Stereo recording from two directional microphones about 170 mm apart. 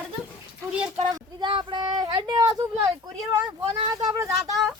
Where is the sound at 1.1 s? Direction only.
25° right (ahead or behind).